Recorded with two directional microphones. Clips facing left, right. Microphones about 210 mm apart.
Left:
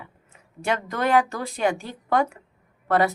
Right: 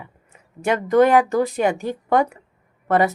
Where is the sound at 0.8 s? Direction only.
15° right (ahead or behind).